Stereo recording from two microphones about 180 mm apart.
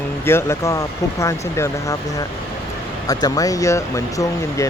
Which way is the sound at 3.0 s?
20° left (ahead or behind).